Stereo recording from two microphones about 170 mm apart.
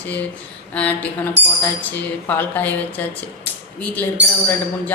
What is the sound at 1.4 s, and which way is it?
Speech, 90° right.